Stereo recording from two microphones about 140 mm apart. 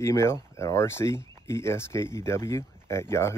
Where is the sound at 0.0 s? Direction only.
20° left (ahead or behind).